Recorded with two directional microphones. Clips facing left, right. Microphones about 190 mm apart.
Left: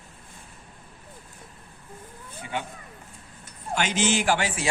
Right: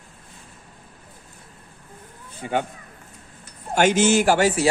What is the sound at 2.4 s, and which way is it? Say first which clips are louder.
Speech: right 8 dB; 50° right (ahead or behind).